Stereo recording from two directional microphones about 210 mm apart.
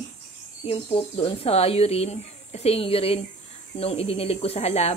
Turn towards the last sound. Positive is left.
turn(degrees=30)  # may be behind; listen again after turning